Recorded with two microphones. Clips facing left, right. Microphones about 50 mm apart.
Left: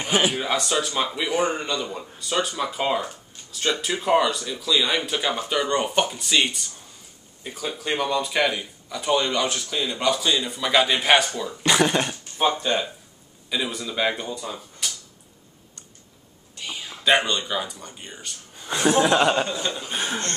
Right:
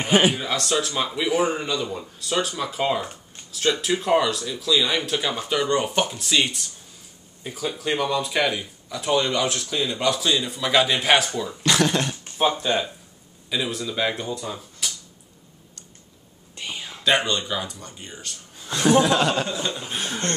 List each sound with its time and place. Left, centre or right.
0.0 s a man's voice: centre
0.4 s speech: centre
11.6 s speech: centre
12.4 s speech: centre
16.9 s a man's voice: centre
19.4 s speech: centre